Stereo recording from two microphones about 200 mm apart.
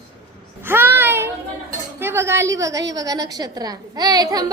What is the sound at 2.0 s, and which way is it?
A woman's voice, 10° right (ahead or behind).